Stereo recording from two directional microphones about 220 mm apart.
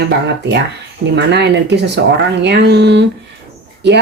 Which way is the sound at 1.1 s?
50° right (ahead or behind).